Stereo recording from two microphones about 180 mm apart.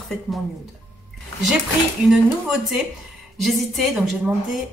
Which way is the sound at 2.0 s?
Centre (ahead or behind).